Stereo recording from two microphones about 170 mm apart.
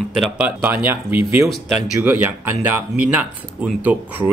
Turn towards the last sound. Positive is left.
turn(degrees=-10)  # may be behind; listen again after turning